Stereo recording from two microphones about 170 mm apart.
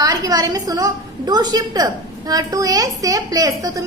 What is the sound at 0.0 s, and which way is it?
A woman's voice, 20° right (ahead or behind).